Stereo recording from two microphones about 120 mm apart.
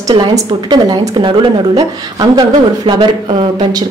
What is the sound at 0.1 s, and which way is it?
A woman's voice, 40° right (ahead or behind).